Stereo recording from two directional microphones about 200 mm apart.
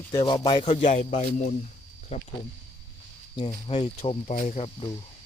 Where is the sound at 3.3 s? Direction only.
25° left (ahead or behind).